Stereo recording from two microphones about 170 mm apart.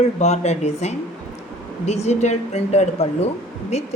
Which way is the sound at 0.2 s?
40° left (ahead or behind).